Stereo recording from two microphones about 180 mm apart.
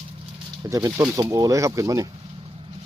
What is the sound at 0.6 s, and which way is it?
Speech, 15° right (ahead or behind).